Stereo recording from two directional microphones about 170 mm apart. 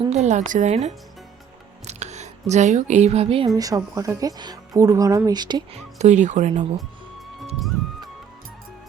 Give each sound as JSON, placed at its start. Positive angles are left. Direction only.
{"t": 0.0, "sound": "speech", "side_deg": -40}
{"t": 3.5, "sound": "speech", "side_deg": -20}
{"t": 6.0, "sound": "speech", "side_deg": -45}